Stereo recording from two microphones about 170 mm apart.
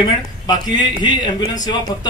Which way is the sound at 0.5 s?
25° left (ahead or behind).